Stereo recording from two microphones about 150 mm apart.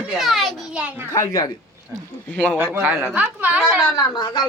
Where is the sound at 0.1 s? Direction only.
Centre (ahead or behind).